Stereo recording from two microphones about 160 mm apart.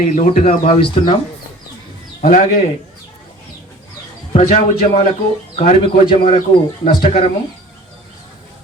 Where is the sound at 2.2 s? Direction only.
55° left (ahead or behind).